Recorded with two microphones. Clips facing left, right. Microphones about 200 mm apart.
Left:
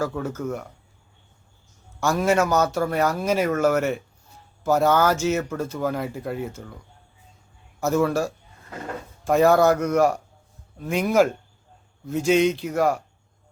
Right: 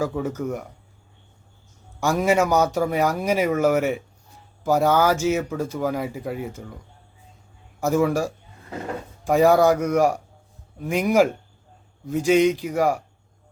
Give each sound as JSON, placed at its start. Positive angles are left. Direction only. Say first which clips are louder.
{"t": 0.0, "sound": "speech", "louder": "right 2 dB", "side_deg": -15}
{"t": 2.0, "sound": "speech", "louder": "right 1 dB", "side_deg": -15}
{"t": 7.8, "sound": "speech", "louder": "right 1 dB", "side_deg": -10}